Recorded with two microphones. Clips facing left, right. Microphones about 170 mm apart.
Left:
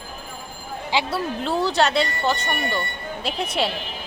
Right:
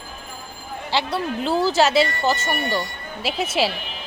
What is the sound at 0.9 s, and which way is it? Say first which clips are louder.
Speech: even; 10° left (ahead or behind).